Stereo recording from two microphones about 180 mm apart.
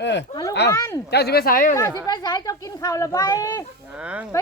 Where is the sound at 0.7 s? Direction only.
15° left (ahead or behind).